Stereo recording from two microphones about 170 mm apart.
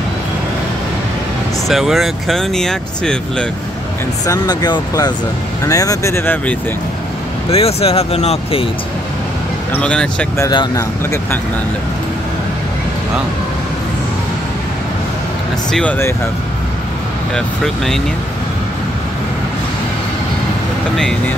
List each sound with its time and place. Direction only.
1.7 s speech: centre (ahead or behind)
4.3 s speech: 25° left (ahead or behind)
7.5 s speech: 35° left (ahead or behind)
9.8 s speech: 5° left (ahead or behind)
10.3 s speech: 20° left (ahead or behind)
15.7 s speech: 10° left (ahead or behind)